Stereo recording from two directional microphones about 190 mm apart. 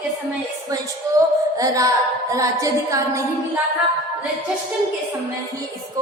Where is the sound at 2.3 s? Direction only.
15° right (ahead or behind).